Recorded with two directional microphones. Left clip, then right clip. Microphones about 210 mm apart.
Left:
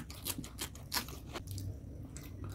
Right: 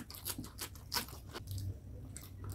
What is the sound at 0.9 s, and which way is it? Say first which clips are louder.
Crunch: left 1 dB; 20° left (ahead or behind).